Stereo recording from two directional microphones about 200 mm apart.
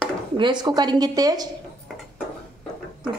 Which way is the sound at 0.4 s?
20° right (ahead or behind).